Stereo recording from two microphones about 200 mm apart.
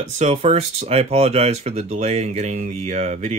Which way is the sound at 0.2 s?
35° right (ahead or behind).